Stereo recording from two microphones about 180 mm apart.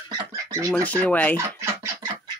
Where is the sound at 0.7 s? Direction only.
5° left (ahead or behind).